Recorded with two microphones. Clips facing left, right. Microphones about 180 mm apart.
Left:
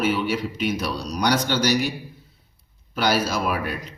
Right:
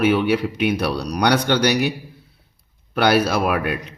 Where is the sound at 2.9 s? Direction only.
65° right (ahead or behind).